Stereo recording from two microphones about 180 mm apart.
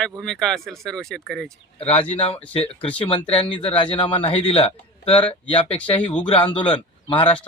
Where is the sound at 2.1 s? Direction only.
35° left (ahead or behind).